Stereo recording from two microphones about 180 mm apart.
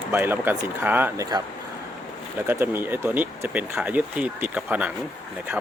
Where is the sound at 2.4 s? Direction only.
10° right (ahead or behind).